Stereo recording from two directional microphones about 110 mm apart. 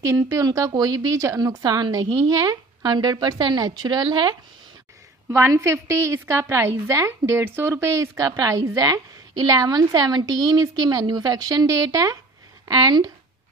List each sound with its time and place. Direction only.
0.0 s a woman's voice: 30° right (ahead or behind)
5.3 s a woman's voice: 25° right (ahead or behind)